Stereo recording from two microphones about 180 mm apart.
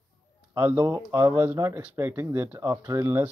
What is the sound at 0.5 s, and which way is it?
Speech, 10° right (ahead or behind).